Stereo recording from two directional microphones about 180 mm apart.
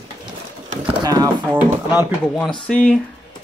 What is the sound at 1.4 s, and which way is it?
Speech, 10° right (ahead or behind).